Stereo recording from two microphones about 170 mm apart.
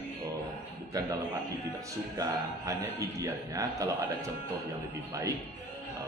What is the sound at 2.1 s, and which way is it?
A man's voice, 20° right (ahead or behind).